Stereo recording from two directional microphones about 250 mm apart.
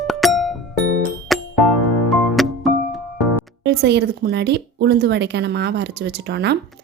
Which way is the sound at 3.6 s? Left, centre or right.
Right.